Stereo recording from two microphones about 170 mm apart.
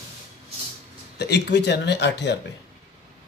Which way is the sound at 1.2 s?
80° left.